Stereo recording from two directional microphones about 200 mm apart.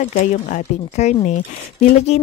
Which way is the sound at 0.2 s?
40° left (ahead or behind).